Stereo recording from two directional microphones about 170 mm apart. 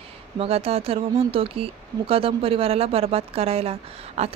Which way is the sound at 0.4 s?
35° right (ahead or behind).